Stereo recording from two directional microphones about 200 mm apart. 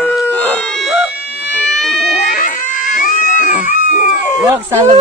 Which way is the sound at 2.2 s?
40° left (ahead or behind).